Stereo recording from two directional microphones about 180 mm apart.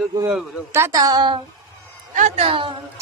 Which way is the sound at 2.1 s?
40° right (ahead or behind).